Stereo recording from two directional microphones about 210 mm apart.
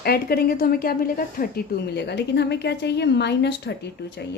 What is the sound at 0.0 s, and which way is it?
A woman's voice, 45° left (ahead or behind).